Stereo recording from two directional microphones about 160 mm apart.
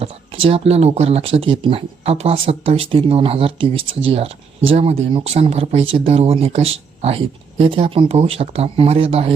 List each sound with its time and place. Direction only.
0.0 s speech: 35° right (ahead or behind)